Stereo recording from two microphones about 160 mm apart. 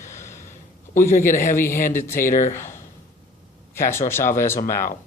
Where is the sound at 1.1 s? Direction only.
55° left (ahead or behind).